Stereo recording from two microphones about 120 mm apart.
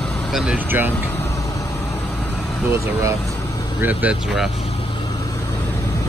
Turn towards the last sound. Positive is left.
turn(degrees=-15)  # may be behind; listen again after turning